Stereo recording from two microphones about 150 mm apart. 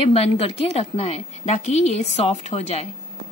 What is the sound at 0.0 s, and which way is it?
A woman's voice, 40° left (ahead or behind).